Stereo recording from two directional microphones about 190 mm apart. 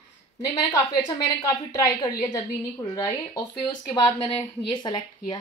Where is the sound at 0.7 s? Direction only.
15° left (ahead or behind).